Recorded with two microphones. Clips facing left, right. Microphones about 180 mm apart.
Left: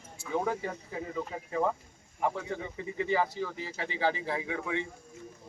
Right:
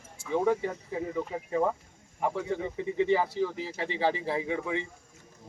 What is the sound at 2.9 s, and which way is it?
Speech, 25° right (ahead or behind).